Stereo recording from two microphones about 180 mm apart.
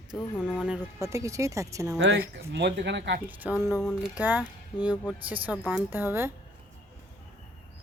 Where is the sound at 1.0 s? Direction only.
15° right (ahead or behind).